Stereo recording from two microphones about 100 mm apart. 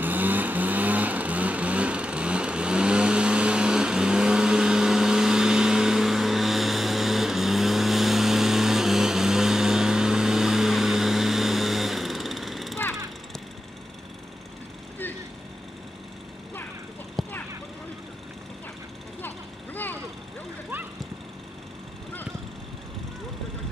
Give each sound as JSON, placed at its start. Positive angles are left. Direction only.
{"t": 0.0, "sound": "vehicle", "side_deg": -20}
{"t": 17.2, "sound": "vehicle", "side_deg": 5}
{"t": 19.2, "sound": "vehicle", "side_deg": 20}